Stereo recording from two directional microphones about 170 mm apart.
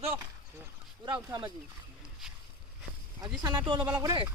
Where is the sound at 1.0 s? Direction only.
25° right (ahead or behind).